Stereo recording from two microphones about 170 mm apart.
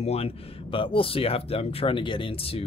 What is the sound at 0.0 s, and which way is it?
Speech, 35° left (ahead or behind).